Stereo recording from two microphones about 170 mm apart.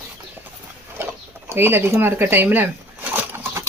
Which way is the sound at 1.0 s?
15° right (ahead or behind).